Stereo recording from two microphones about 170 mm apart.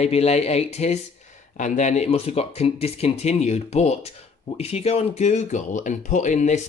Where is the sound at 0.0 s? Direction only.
40° left (ahead or behind).